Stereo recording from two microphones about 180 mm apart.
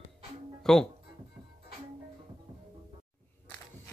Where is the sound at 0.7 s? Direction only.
Centre (ahead or behind).